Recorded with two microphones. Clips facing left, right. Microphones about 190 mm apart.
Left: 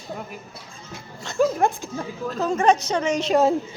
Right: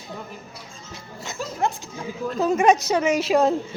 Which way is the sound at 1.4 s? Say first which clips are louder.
Left 7 dB; 55° left (ahead or behind).